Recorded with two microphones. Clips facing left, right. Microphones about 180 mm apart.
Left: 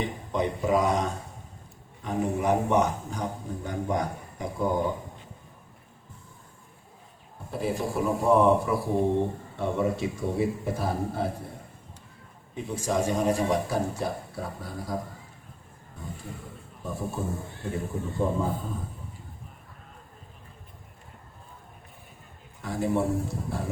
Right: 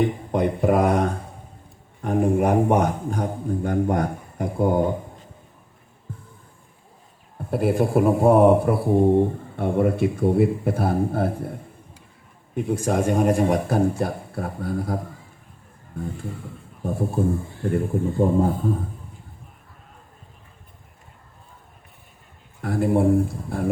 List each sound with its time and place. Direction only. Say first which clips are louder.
0.3 s a sound: right 1 dB; 55° right (ahead or behind)
2.0 s a man's voice: right 8 dB; 50° right (ahead or behind)
7.5 s speech: right 9 dB; 55° right (ahead or behind)
12.5 s speech: right 5 dB; 55° right (ahead or behind)
17.2 s speech: right 9 dB; 55° right (ahead or behind)
22.6 s speech: right 7 dB; 55° right (ahead or behind)